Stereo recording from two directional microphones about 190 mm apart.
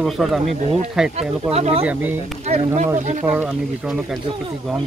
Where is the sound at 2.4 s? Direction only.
35° right (ahead or behind).